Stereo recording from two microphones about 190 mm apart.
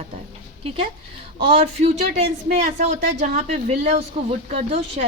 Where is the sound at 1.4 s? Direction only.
30° right (ahead or behind).